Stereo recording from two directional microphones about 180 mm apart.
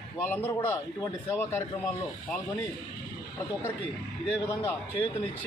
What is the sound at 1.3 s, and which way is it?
Speech, 15° left (ahead or behind).